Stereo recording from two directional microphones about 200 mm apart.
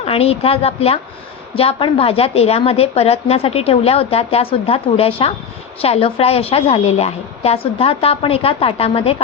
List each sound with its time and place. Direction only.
0.0 s a woman's voice: 30° left (ahead or behind)